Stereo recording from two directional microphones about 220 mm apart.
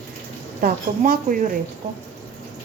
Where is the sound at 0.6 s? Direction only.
40° right (ahead or behind).